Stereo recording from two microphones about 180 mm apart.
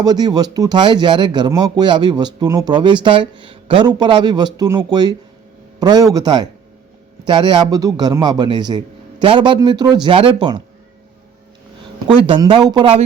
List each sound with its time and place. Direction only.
0.0 s speech: 20° right (ahead or behind)
12.0 s speech: 30° right (ahead or behind)